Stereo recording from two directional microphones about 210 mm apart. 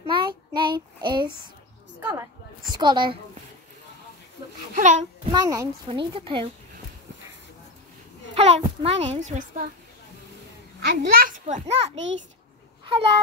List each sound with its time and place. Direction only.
0.0 s child singing: 25° right (ahead or behind)
2.0 s a sound: 10° right (ahead or behind)
2.7 s a woman's voice: 20° right (ahead or behind)
4.7 s a child's voice: 35° right (ahead or behind)
5.3 s a child's voice: 20° right (ahead or behind)
8.4 s a child's voice: 30° right (ahead or behind)
10.9 s a child's voice: 50° right (ahead or behind); by 11.9 s 30° right (ahead or behind)
11.9 s a child's voice: 60° right (ahead or behind)
12.8 s babbling: 25° right (ahead or behind)